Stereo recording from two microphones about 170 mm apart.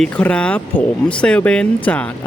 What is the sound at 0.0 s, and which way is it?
Speech, 5° left (ahead or behind).